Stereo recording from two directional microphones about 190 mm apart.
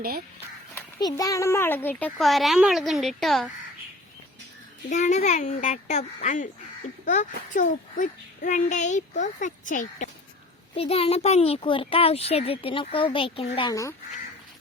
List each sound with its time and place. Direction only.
0.9 s a child's voice: 20° left (ahead or behind); by 3.5 s centre (ahead or behind)
4.9 s a child's voice: 40° left (ahead or behind)
10.8 s speech: 30° left (ahead or behind)